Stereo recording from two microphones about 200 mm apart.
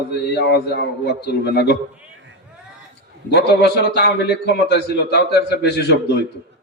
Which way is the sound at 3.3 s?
55° left (ahead or behind).